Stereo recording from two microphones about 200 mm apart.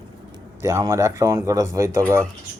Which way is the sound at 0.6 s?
15° right (ahead or behind).